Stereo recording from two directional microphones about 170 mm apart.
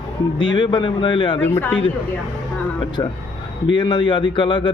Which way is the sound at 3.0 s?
25° left (ahead or behind).